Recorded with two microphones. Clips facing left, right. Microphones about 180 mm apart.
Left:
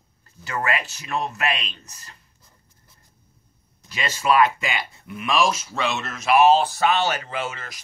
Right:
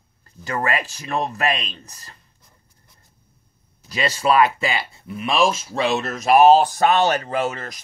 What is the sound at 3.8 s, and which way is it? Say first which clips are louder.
Speech: right 3 dB; 35° right (ahead or behind).